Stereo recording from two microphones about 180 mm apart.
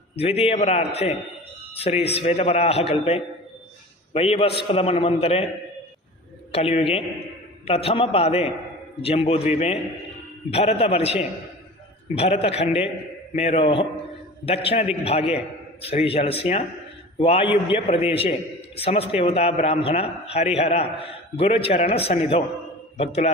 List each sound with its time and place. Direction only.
0.2 s a man's voice: 35° left (ahead or behind)
6.5 s a man's voice: 35° left (ahead or behind)